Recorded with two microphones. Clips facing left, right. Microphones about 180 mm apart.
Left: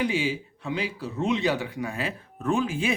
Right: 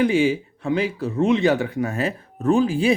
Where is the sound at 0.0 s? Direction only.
50° right (ahead or behind).